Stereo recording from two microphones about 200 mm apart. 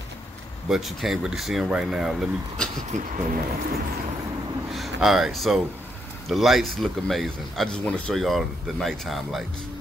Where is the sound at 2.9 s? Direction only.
35° right (ahead or behind).